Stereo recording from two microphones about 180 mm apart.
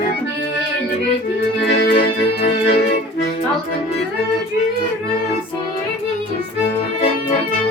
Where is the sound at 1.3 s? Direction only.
70° left (ahead or behind).